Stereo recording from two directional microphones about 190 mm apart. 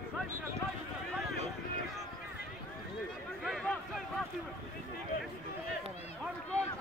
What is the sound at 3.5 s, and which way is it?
Speech, centre (ahead or behind).